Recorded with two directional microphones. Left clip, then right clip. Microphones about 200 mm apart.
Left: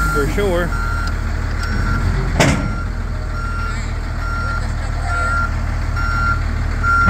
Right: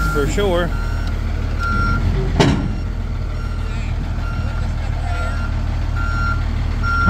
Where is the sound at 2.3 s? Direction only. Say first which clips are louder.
Left 1 dB; 5° left (ahead or behind).